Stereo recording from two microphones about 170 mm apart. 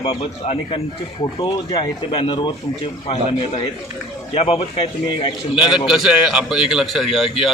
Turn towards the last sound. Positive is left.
turn(degrees=0)  # may be behind; listen again after turning